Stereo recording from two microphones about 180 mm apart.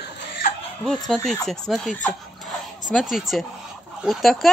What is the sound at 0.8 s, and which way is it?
Speech, centre (ahead or behind).